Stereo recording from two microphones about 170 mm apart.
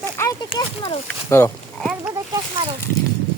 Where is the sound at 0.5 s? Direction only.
30° left (ahead or behind).